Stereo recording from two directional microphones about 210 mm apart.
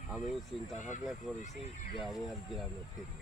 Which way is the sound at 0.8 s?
35° left (ahead or behind).